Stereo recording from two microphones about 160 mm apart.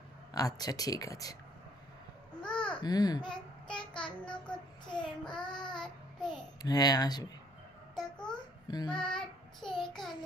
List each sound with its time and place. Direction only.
0.3 s speech: 20° left (ahead or behind)
2.4 s babbling: 5° left (ahead or behind)
2.8 s speech: 25° left (ahead or behind)
3.6 s child singing: 5° left (ahead or behind)
6.6 s speech: 25° left (ahead or behind)
7.9 s babbling: 5° left (ahead or behind)
8.6 s child singing: 25° left (ahead or behind)
8.9 s child singing: 5° left (ahead or behind)